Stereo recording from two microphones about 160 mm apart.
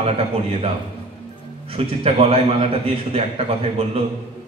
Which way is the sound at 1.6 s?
40° right (ahead or behind).